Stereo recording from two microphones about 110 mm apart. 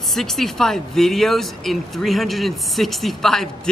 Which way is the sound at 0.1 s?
Centre (ahead or behind).